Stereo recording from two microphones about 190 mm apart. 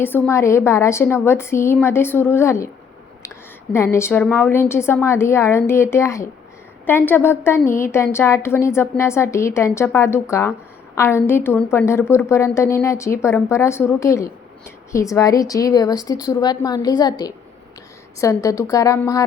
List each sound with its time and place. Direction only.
0.0 s a woman's voice: 15° left (ahead or behind)